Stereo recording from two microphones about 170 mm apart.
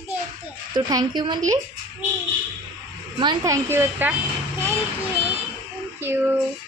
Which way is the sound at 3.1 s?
20° right (ahead or behind).